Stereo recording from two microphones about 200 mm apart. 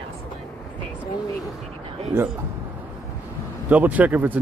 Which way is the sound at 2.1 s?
10° right (ahead or behind).